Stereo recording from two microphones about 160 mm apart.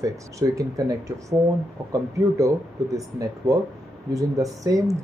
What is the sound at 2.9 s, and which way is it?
Speech, 20° right (ahead or behind).